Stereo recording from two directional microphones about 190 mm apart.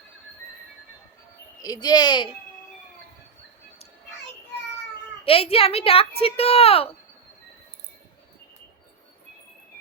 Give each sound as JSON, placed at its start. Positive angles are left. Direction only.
{"t": 1.6, "sound": "speech", "side_deg": 20}
{"t": 5.2, "sound": "speech", "side_deg": 30}